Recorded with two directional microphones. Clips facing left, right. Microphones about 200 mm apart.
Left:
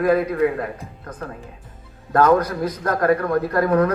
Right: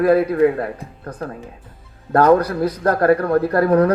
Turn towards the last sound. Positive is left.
turn(degrees=-35)  # may be behind; listen again after turning